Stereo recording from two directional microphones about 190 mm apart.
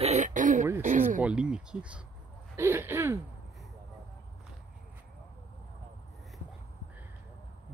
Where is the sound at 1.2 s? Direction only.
5° right (ahead or behind).